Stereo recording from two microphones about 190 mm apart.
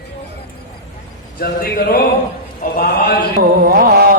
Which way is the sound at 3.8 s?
50° right (ahead or behind).